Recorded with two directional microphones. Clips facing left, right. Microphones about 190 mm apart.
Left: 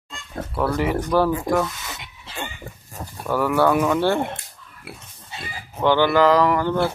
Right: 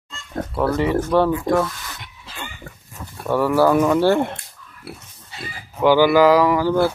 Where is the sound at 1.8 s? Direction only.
25° left (ahead or behind).